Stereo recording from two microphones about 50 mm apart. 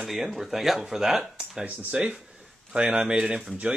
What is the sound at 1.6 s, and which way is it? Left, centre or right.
A man's voice, centre.